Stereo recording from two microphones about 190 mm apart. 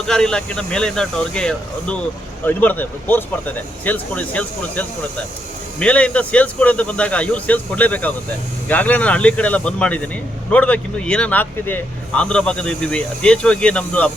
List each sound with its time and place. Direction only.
0.1 s speech: 5° left (ahead or behind)